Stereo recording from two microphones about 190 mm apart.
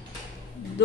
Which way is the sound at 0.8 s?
65° left (ahead or behind).